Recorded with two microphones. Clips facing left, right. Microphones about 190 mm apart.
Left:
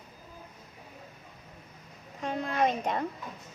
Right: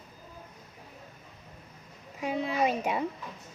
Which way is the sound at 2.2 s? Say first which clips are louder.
Even; 5° right (ahead or behind).